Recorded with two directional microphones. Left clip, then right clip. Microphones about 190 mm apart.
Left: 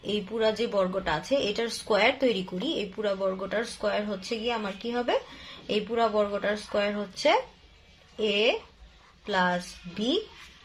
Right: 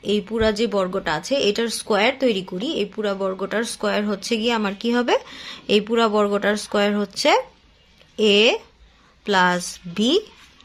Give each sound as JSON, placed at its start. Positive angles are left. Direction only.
{"t": 0.0, "sound": "speech", "side_deg": -35}